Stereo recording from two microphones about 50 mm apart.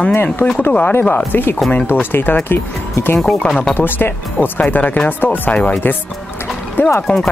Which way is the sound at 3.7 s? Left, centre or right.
Left.